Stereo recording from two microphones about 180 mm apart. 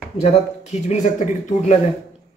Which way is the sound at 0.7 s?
40° left (ahead or behind).